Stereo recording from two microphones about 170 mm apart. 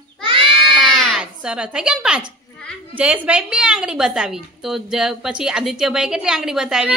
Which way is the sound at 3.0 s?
5° right (ahead or behind).